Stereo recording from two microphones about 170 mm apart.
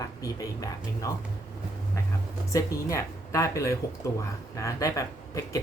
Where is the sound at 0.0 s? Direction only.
20° left (ahead or behind).